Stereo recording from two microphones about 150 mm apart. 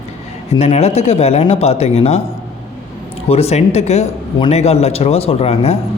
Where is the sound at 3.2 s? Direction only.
45° left (ahead or behind).